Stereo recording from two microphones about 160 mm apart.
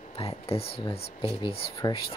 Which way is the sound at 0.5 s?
40° left (ahead or behind).